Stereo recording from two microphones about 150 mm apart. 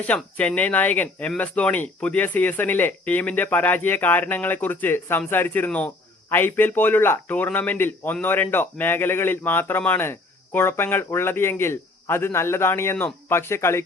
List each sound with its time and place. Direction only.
0.0 s a man's voice: 10° left (ahead or behind)